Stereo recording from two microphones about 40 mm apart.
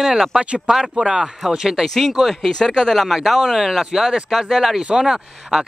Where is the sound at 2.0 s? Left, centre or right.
Centre.